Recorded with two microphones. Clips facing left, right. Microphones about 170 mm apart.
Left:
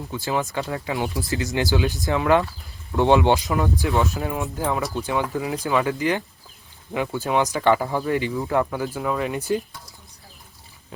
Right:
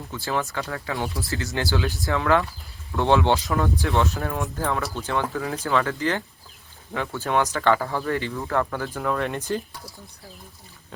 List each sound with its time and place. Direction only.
0.1 s speech: 15° left (ahead or behind)